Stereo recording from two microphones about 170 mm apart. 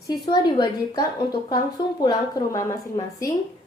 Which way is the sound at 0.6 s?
25° left (ahead or behind).